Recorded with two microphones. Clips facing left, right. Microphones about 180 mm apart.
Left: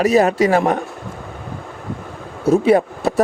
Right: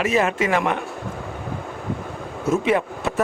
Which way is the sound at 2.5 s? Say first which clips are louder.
Left 7 dB; 35° left (ahead or behind).